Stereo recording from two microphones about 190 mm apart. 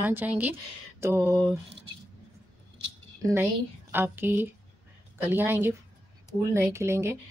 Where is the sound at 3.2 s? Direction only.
15° right (ahead or behind).